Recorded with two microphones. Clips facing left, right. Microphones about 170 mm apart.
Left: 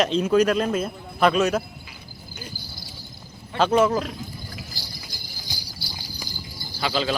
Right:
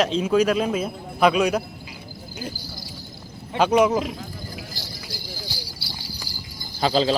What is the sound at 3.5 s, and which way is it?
Speech, 15° right (ahead or behind).